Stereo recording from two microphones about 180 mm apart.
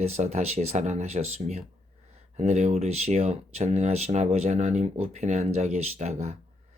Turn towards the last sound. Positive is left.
turn(degrees=-40)  # may be behind; listen again after turning